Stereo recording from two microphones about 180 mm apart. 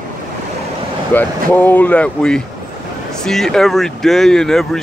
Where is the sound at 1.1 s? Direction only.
10° left (ahead or behind).